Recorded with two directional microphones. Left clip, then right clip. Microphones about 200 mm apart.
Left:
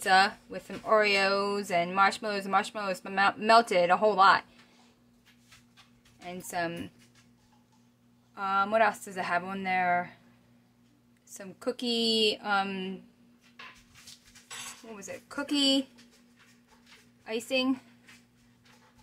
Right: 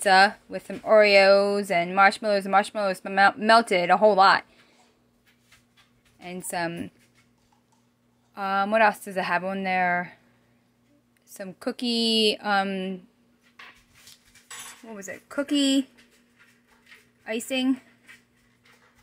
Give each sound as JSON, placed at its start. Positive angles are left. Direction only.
{"t": 0.0, "sound": "speech", "side_deg": -25}
{"t": 6.1, "sound": "speech", "side_deg": -25}
{"t": 8.4, "sound": "speech", "side_deg": -30}
{"t": 11.2, "sound": "speech", "side_deg": -25}
{"t": 14.9, "sound": "speech", "side_deg": -30}
{"t": 17.2, "sound": "speech", "side_deg": -25}